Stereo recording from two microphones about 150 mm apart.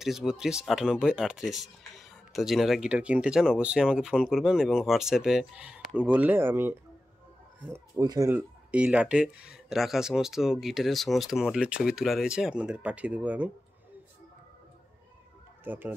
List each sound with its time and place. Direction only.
0.0 s speech: centre (ahead or behind); by 8.3 s 25° right (ahead or behind)
8.3 s speech: 10° right (ahead or behind)
15.6 s speech: 15° right (ahead or behind)